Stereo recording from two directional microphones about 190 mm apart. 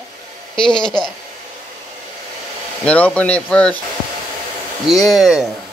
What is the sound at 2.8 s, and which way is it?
Speech, 5° left (ahead or behind).